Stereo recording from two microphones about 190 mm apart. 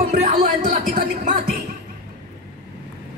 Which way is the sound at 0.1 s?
40° right (ahead or behind).